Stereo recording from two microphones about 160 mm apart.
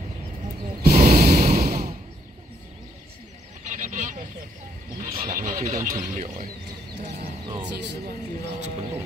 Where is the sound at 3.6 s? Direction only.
50° right (ahead or behind).